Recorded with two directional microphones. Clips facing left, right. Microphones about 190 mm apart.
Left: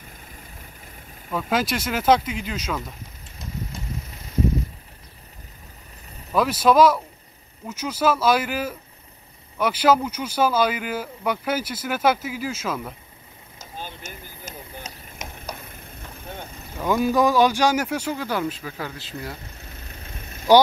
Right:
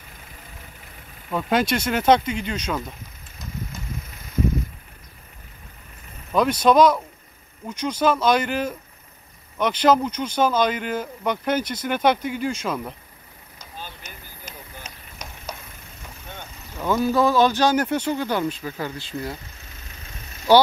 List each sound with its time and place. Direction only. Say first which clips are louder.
1.3 s speech: right 2 dB; centre (ahead or behind)
6.3 s speech: right 1 dB; 5° left (ahead or behind)
13.6 s a sound: left 3 dB; 50° left (ahead or behind)
16.3 s boat: left 4 dB; 30° left (ahead or behind)
16.7 s speech: even; 15° left (ahead or behind)
19.7 s vehicle: left 3 dB; 55° left (ahead or behind)